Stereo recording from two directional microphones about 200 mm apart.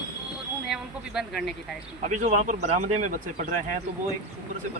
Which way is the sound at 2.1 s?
35° right (ahead or behind).